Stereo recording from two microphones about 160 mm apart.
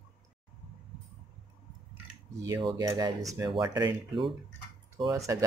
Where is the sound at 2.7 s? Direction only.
25° right (ahead or behind).